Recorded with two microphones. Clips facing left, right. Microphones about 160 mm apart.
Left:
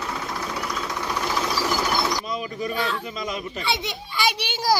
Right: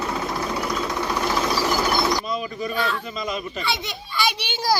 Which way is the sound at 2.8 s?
15° left (ahead or behind).